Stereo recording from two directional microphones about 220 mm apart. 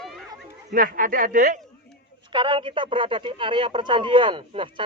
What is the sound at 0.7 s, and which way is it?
Speech, 40° right (ahead or behind).